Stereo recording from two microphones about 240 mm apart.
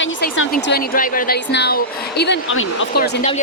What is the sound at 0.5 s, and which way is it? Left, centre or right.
A woman's voice, left.